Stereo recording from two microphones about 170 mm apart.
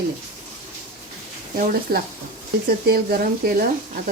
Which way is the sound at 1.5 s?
55° right (ahead or behind).